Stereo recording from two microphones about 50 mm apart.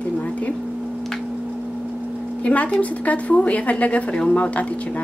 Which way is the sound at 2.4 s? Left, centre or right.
Left.